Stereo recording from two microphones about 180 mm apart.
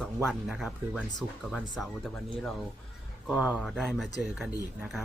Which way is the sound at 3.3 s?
5° right (ahead or behind).